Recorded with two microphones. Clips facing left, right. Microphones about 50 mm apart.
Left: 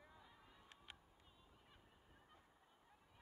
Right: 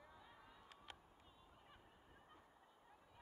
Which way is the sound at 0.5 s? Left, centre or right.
Centre.